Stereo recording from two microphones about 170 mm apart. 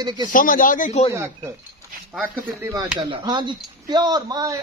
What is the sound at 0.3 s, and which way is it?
Speech, 55° left (ahead or behind).